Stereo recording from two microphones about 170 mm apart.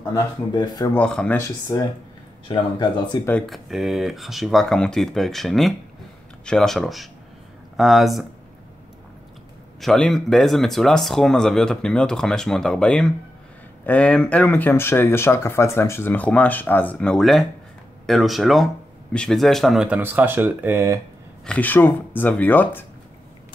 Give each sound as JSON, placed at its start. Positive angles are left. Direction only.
{"t": 0.5, "sound": "speech", "side_deg": 25}
{"t": 0.9, "sound": "speech", "side_deg": 5}
{"t": 2.4, "sound": "speech", "side_deg": 30}
{"t": 3.3, "sound": "speech", "side_deg": 5}
{"t": 9.8, "sound": "speech", "side_deg": 0}
{"t": 21.5, "sound": "speech", "side_deg": 10}